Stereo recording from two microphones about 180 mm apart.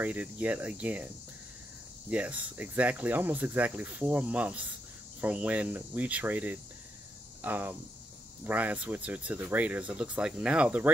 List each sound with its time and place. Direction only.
0.0 s speech: 10° right (ahead or behind)
2.0 s speech: 5° right (ahead or behind)